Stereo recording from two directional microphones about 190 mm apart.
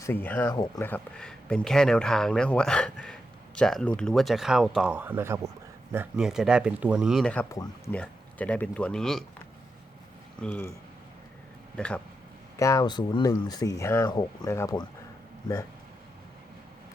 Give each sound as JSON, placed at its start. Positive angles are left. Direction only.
{"t": 0.0, "sound": "speech", "side_deg": 10}
{"t": 7.5, "sound": "speech", "side_deg": 15}
{"t": 10.4, "sound": "speech", "side_deg": 10}
{"t": 11.8, "sound": "speech", "side_deg": 5}
{"t": 12.5, "sound": "speech", "side_deg": 15}